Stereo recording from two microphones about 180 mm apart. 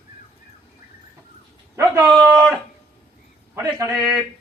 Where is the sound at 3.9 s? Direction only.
Centre (ahead or behind).